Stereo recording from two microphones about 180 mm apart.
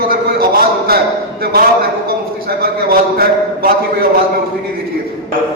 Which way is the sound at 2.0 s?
55° right (ahead or behind).